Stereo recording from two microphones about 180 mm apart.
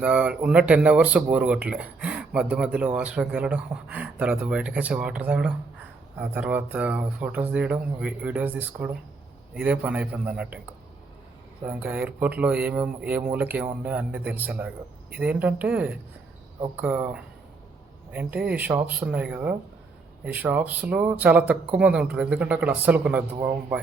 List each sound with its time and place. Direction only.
0.0 s speech: 5° right (ahead or behind)
11.6 s speech: 10° right (ahead or behind)